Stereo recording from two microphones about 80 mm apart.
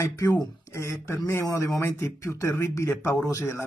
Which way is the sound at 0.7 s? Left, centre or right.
Left.